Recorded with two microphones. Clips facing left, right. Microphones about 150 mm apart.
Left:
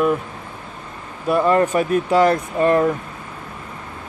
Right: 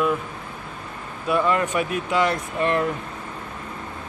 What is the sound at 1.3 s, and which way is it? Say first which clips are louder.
Speech: left 5 dB; 40° left (ahead or behind).